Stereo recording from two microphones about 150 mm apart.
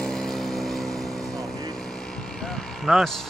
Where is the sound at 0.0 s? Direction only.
5° left (ahead or behind).